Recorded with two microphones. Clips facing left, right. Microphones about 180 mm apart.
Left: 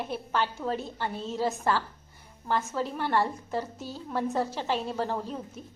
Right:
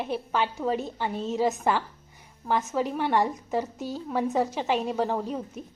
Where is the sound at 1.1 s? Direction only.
40° right (ahead or behind).